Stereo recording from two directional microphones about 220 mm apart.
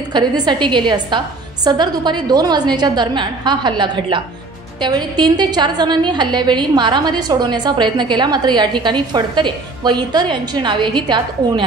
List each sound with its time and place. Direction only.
0.1 s a woman's voice: 20° right (ahead or behind)